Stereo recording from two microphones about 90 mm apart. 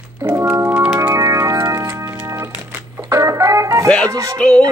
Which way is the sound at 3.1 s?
35° right (ahead or behind).